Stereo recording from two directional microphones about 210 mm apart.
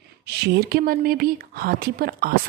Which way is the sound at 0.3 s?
50° right (ahead or behind).